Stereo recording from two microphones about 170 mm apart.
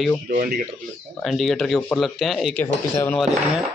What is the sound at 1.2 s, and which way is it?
Speech, centre (ahead or behind).